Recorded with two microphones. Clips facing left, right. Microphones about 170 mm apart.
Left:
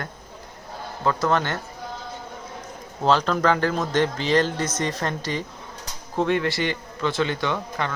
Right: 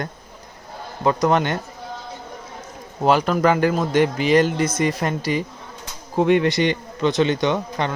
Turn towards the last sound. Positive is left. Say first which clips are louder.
# right 5 dB
turn(degrees=-20)  # may be behind; listen again after turning